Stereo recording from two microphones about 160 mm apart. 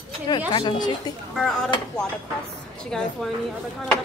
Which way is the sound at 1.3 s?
5° left (ahead or behind).